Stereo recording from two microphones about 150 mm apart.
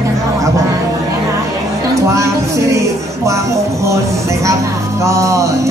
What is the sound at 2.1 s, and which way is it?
Music, 20° right (ahead or behind).